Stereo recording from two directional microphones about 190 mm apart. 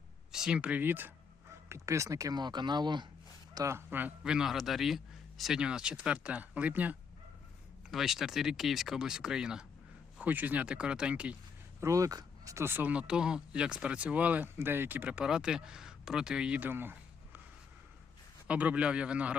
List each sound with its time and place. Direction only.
0.3 s a man's voice: 5° right (ahead or behind)
18.4 s speech: 5° right (ahead or behind)